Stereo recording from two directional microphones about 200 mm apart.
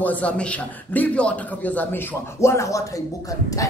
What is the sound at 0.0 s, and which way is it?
A man's voice, 5° left (ahead or behind).